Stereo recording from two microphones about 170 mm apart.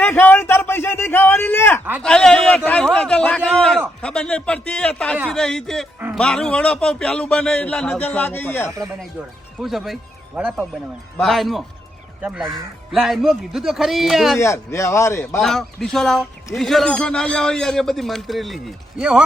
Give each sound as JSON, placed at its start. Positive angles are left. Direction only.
{"t": 0.0, "sound": "a man's voice", "side_deg": 10}
{"t": 8.7, "sound": "speech", "side_deg": -15}
{"t": 9.6, "sound": "speech", "side_deg": 0}
{"t": 14.3, "sound": "a man's voice", "side_deg": 15}
{"t": 15.4, "sound": "speech", "side_deg": 0}